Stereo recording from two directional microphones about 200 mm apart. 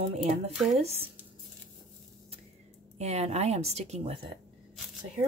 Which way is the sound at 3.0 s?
35° right (ahead or behind).